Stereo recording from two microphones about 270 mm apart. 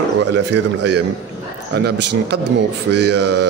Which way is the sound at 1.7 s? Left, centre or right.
Right.